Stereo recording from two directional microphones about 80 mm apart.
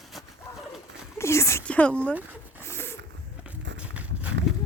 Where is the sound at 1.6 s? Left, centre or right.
Centre.